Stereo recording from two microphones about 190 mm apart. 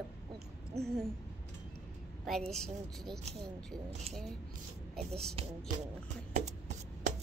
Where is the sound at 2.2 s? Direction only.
Centre (ahead or behind).